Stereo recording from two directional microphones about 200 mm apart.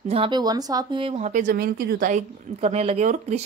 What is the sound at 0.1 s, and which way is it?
Speech, 25° right (ahead or behind).